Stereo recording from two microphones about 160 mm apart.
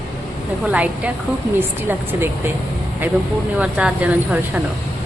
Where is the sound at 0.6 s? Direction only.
5° right (ahead or behind).